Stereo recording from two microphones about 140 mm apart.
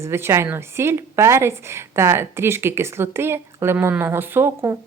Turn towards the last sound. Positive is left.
turn(degrees=-15)  # may be behind; listen again after turning